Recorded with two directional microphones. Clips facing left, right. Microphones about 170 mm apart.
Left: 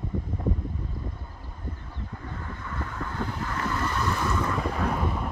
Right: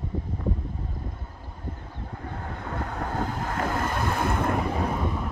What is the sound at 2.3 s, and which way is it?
Waves, 60° right (ahead or behind).